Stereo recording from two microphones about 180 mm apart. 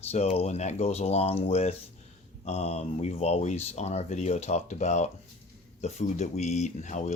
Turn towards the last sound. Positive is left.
turn(degrees=40)  # may be behind; listen again after turning